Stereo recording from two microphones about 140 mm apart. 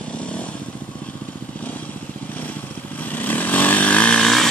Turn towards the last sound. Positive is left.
turn(degrees=5)  # may be behind; listen again after turning